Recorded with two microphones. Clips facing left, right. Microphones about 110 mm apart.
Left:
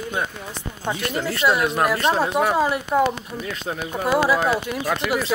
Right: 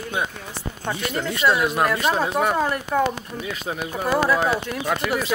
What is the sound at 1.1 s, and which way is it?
Speech, 5° left (ahead or behind).